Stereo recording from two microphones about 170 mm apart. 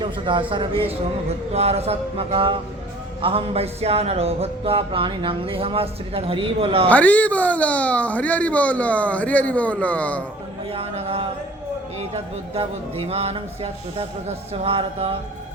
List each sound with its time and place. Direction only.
0.0 s a man's voice: 30° right (ahead or behind)
6.9 s speech: 10° left (ahead or behind)
10.7 s speech: 35° right (ahead or behind)